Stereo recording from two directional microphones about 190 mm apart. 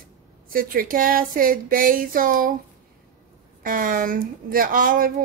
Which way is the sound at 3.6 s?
50° right (ahead or behind).